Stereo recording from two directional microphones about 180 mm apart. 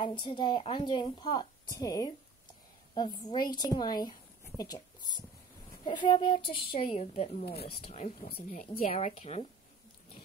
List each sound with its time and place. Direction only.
0.0 s speech: 25° left (ahead or behind)
8.5 s a woman's voice: 45° left (ahead or behind)